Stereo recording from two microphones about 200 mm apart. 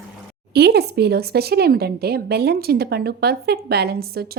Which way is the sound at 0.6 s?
55° right (ahead or behind).